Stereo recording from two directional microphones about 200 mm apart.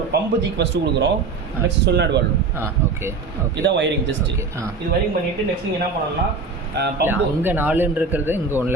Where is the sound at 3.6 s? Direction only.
65° right (ahead or behind).